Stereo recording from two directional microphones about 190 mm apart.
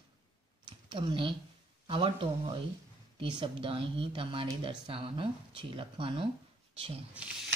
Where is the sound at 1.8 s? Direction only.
30° right (ahead or behind).